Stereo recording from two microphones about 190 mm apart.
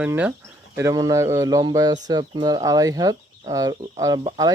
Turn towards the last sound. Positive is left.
turn(degrees=-20)  # may be behind; listen again after turning